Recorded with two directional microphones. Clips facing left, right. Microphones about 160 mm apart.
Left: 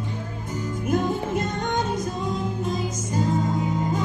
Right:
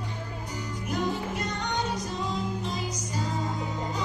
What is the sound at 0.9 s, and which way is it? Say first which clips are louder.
Music: left 6 dB; 50° left (ahead or behind).